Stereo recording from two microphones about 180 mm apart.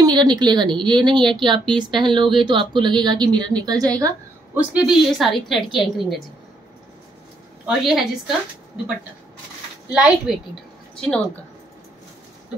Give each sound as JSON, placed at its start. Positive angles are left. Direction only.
{"t": 0.0, "sound": "a woman's voice", "side_deg": -20}
{"t": 4.6, "sound": "a woman's voice", "side_deg": -5}
{"t": 7.6, "sound": "a woman's voice", "side_deg": 0}
{"t": 9.8, "sound": "a woman's voice", "side_deg": -5}
{"t": 11.0, "sound": "a woman's voice", "side_deg": 5}